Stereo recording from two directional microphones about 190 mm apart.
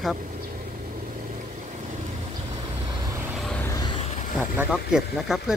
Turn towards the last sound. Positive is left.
turn(degrees=-5)  # may be behind; listen again after turning